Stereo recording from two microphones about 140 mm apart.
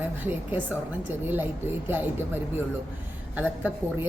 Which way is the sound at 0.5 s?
15° right (ahead or behind).